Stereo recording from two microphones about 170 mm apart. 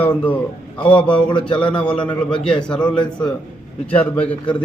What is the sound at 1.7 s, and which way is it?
Speech, 30° left (ahead or behind).